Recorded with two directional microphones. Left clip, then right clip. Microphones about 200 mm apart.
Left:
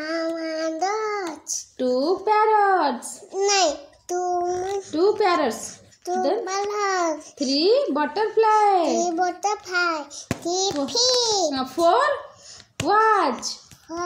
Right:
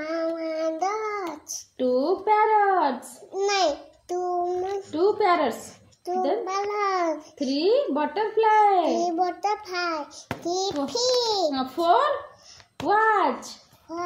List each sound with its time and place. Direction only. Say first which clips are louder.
0.0 s child singing: left 1 dB; 10° left (ahead or behind)
1.8 s a sound: left 1 dB; 35° left (ahead or behind)
3.3 s babbling: left 3 dB; 10° left (ahead or behind)
4.9 s a woman's voice: left 1 dB; 35° left (ahead or behind)
6.4 s a child's voice: left 1 dB; 10° left (ahead or behind)
7.6 s a child's voice: left 2 dB; 35° left (ahead or behind)
8.9 s a child's voice: left 2 dB; 10° left (ahead or behind)
11.5 s a child's voice: left 2 dB; 35° left (ahead or behind)
13.4 s babbling: left 8 dB; 10° left (ahead or behind)